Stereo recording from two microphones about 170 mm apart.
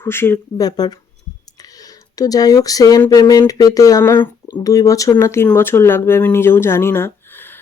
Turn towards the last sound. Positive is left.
turn(degrees=10)  # may be behind; listen again after turning